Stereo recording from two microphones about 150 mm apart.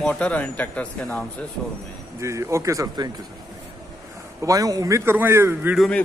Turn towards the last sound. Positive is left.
turn(degrees=5)  # may be behind; listen again after turning